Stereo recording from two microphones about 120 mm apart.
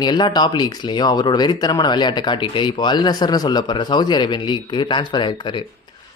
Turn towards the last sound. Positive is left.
turn(degrees=40)  # may be behind; listen again after turning